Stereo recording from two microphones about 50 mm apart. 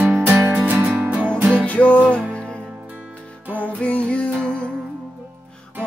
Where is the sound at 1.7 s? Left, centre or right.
Left.